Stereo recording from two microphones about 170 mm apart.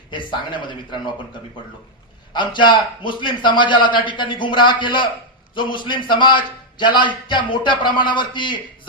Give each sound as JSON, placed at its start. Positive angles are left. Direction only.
{"t": 0.1, "sound": "a man's voice", "side_deg": 30}
{"t": 2.3, "sound": "a man's voice", "side_deg": 30}